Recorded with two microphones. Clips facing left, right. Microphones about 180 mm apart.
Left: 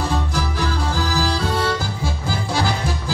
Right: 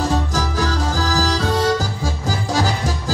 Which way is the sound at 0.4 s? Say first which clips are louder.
Right 2 dB; 40° right (ahead or behind).